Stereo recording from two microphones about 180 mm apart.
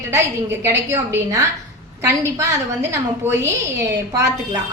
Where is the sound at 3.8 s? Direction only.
15° right (ahead or behind).